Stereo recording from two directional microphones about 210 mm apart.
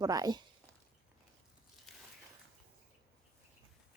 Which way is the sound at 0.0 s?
15° right (ahead or behind).